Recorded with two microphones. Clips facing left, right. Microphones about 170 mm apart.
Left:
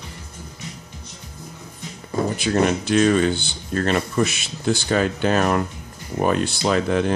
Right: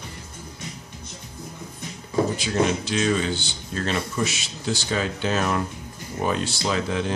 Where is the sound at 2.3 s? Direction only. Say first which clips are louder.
Left 3 dB; 55° left (ahead or behind).